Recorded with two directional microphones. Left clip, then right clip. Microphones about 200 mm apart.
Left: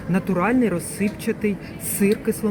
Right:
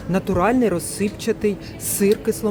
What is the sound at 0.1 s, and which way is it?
Speech, 15° right (ahead or behind).